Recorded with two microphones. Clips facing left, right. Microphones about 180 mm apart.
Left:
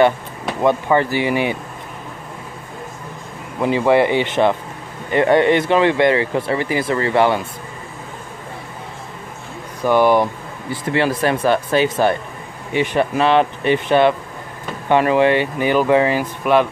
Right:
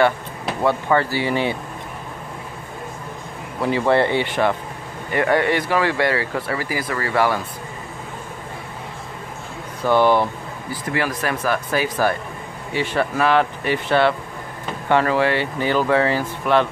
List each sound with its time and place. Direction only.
0.6 s speech: 15° left (ahead or behind)
3.6 s speech: 15° left (ahead or behind)
9.8 s speech: 10° left (ahead or behind)
10.7 s speech: 25° left (ahead or behind)